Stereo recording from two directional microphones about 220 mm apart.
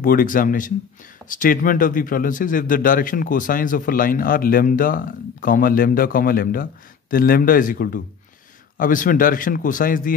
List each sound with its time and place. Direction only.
0.0 s a man's voice: 40° left (ahead or behind)